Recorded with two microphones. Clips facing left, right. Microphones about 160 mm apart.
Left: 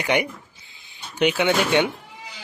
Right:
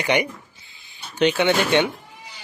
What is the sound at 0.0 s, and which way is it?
Speech, 5° left (ahead or behind).